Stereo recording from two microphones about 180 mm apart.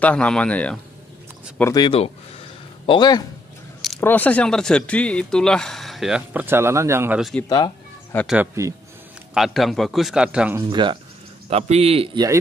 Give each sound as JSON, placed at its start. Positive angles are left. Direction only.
{"t": 0.0, "sound": "speech", "side_deg": 5}
{"t": 1.6, "sound": "speech", "side_deg": 20}
{"t": 1.9, "sound": "speech", "side_deg": 35}
{"t": 4.0, "sound": "speech", "side_deg": 10}
{"t": 7.2, "sound": "speech", "side_deg": 0}
{"t": 7.4, "sound": "speech", "side_deg": 25}
{"t": 8.6, "sound": "speech", "side_deg": -15}
{"t": 9.3, "sound": "speech", "side_deg": 0}
{"t": 10.7, "sound": "a man's voice", "side_deg": -25}